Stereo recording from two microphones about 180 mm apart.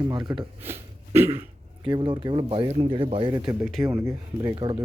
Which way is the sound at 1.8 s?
25° right (ahead or behind).